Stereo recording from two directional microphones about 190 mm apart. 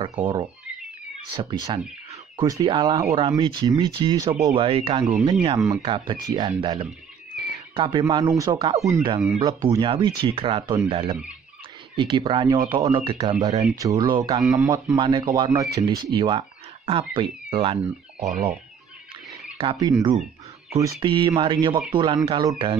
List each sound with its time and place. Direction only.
0.0 s speech: 25° right (ahead or behind)
19.6 s speech: 30° right (ahead or behind)